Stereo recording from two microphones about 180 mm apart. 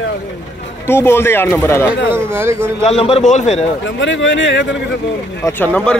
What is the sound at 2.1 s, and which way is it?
Speech, 15° right (ahead or behind).